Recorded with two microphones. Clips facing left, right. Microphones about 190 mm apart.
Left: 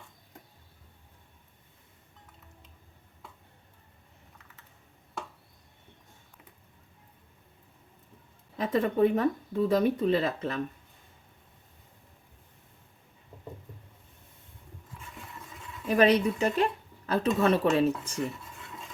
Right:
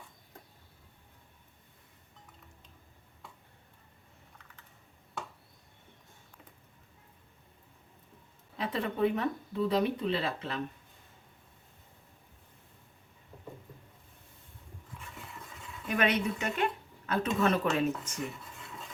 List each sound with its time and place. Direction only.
8.5 s speech: 45° left (ahead or behind)
15.9 s speech: 35° left (ahead or behind)